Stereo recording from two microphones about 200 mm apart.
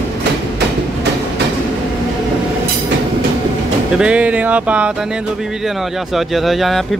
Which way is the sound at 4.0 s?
5° right (ahead or behind).